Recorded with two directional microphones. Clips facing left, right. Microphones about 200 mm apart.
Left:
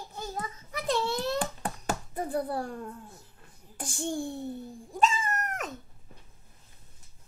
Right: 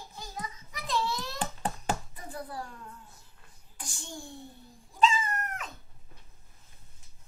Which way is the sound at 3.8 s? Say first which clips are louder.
Left 12 dB; 50° left (ahead or behind).